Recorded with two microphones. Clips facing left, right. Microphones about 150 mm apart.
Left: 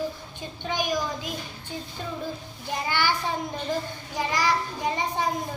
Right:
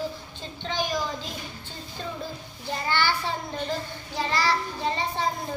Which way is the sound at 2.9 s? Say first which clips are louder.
Even; 15° left (ahead or behind).